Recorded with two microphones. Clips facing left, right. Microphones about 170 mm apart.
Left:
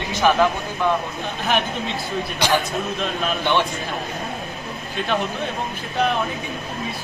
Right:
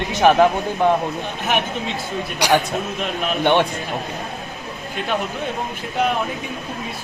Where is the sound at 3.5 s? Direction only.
55° right (ahead or behind).